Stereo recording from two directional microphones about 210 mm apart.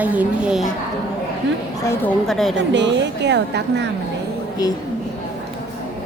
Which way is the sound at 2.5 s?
60° right (ahead or behind).